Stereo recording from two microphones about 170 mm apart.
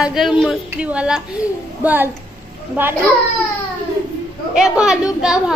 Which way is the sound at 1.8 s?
10° right (ahead or behind).